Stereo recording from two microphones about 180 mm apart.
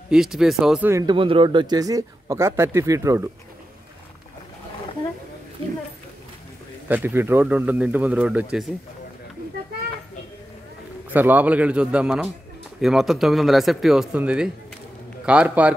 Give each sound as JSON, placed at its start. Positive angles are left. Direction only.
{"t": 0.1, "sound": "speech", "side_deg": 0}
{"t": 1.0, "sound": "a man's voice", "side_deg": -30}
{"t": 6.9, "sound": "speech", "side_deg": -10}
{"t": 11.1, "sound": "speech", "side_deg": -10}